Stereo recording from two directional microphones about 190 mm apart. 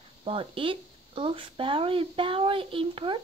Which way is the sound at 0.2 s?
30° right (ahead or behind).